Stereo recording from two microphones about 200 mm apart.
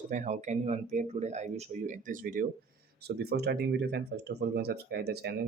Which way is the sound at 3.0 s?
55° right (ahead or behind).